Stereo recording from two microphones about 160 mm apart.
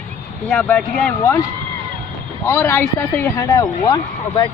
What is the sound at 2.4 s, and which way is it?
Speech, 15° left (ahead or behind).